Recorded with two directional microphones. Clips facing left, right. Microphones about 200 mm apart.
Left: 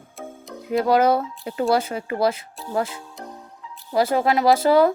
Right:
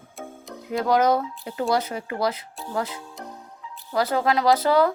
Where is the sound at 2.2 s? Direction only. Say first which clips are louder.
Left 5 dB; 25° left (ahead or behind).